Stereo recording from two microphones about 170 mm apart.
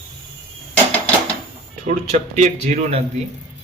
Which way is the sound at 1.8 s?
45° right (ahead or behind).